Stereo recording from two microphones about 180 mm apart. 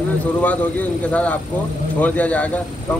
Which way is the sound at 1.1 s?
10° left (ahead or behind).